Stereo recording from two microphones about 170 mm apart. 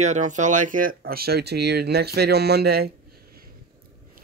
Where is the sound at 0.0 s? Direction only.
45° right (ahead or behind); by 3.4 s 65° right (ahead or behind).